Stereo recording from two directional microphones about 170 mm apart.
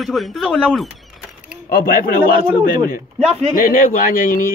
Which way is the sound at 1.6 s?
55° left (ahead or behind).